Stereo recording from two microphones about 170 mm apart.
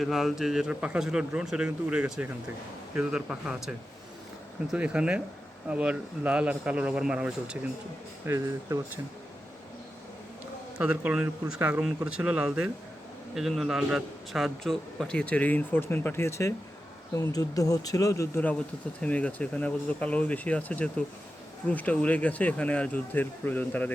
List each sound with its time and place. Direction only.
0.0 s speech: centre (ahead or behind)
10.8 s a man's voice: 5° right (ahead or behind); by 23.9 s 10° left (ahead or behind)